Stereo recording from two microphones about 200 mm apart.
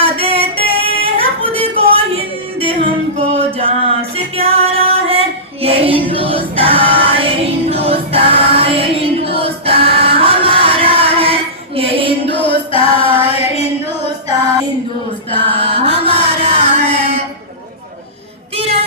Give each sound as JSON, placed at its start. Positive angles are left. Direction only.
{"t": 0.0, "sound": "music", "side_deg": -30}
{"t": 0.8, "sound": "female singing", "side_deg": -30}
{"t": 3.2, "sound": "a sound", "side_deg": -30}
{"t": 4.4, "sound": "music", "side_deg": -30}
{"t": 12.2, "sound": "a sound", "side_deg": 25}
{"t": 15.4, "sound": "mantra", "side_deg": -30}